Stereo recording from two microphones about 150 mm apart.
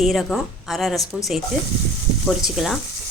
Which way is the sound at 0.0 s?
Centre (ahead or behind).